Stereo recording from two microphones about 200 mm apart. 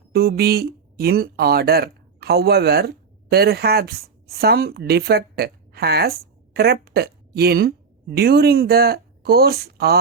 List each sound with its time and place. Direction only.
0.1 s speech: 50° right (ahead or behind)